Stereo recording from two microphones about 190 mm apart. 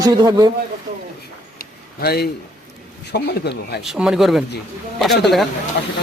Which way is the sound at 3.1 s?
60° left (ahead or behind).